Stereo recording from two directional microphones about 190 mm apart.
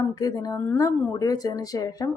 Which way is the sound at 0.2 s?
20° left (ahead or behind).